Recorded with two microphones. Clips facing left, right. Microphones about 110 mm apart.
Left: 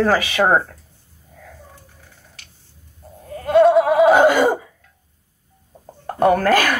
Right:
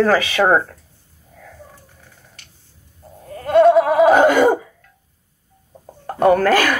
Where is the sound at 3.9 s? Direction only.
Centre (ahead or behind).